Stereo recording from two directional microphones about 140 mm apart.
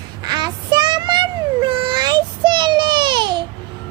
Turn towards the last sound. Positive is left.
turn(degrees=-35)  # may be behind; listen again after turning